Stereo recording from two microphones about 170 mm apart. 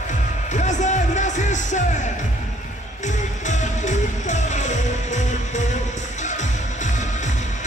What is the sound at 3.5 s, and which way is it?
Music, 45° left (ahead or behind).